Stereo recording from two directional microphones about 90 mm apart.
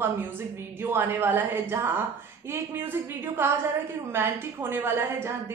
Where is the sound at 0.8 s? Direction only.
25° right (ahead or behind).